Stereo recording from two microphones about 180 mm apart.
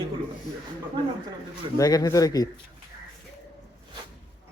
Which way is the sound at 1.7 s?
20° left (ahead or behind).